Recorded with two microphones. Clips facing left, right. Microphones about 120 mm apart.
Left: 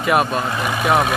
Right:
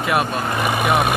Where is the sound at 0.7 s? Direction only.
60° right (ahead or behind).